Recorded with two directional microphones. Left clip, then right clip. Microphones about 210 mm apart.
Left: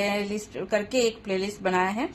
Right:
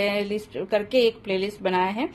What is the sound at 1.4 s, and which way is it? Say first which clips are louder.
Speech: left 1 dB; 20° right (ahead or behind).